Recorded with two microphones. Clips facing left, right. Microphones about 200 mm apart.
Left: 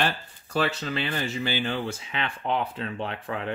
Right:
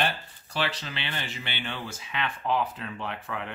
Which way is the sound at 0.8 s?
40° left (ahead or behind).